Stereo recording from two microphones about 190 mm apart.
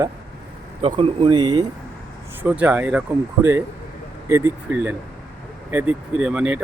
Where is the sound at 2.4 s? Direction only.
10° right (ahead or behind).